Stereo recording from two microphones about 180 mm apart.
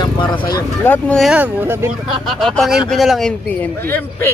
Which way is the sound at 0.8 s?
10° left (ahead or behind).